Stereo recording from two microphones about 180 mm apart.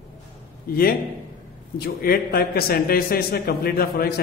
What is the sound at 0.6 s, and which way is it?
A man's voice, 55° left (ahead or behind).